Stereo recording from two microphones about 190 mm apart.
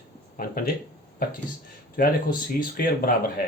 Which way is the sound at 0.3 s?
50° left (ahead or behind).